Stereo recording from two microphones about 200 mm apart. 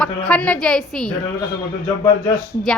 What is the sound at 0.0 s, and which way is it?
A woman's voice, 5° left (ahead or behind).